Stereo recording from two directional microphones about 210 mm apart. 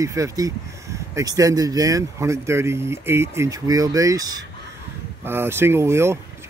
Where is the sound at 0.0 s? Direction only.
15° right (ahead or behind).